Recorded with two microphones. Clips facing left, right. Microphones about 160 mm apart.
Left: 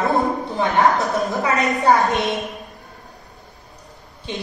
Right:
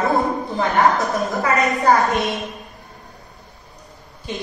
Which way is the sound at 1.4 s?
20° left (ahead or behind).